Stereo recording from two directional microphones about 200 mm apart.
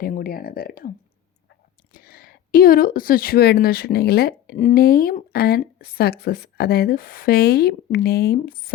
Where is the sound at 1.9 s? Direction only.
45° left (ahead or behind).